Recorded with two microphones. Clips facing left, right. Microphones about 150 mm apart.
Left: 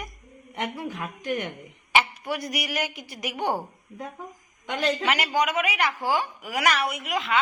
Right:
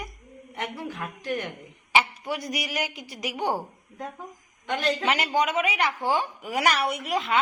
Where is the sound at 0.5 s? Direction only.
15° left (ahead or behind).